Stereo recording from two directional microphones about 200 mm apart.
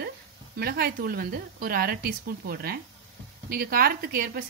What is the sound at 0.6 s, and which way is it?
A woman's voice, 50° right (ahead or behind).